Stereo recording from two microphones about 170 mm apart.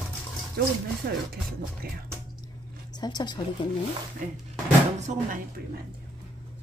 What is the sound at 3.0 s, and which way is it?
Speech, 25° left (ahead or behind).